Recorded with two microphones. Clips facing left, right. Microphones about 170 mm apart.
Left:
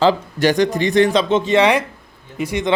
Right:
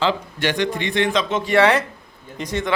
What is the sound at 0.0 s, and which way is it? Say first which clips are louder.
A man's voice: left 6 dB; 40° left (ahead or behind).